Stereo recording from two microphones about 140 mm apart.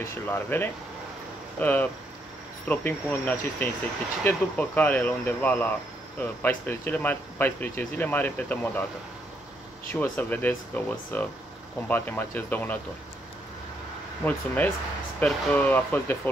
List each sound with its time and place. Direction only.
0.0 s speech: 15° left (ahead or behind)
9.8 s speech: 15° left (ahead or behind)
14.2 s speech: 10° left (ahead or behind)